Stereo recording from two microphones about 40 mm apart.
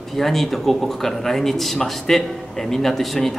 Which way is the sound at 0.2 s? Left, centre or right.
Centre.